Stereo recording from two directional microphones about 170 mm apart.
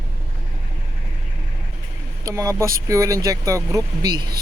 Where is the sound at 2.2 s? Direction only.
20° right (ahead or behind).